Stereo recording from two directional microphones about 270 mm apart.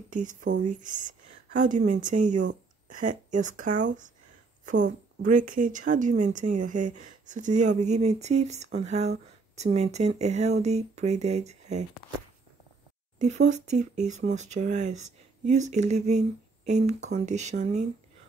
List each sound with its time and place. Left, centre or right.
0.1 s a woman's voice: right
13.2 s a woman's voice: right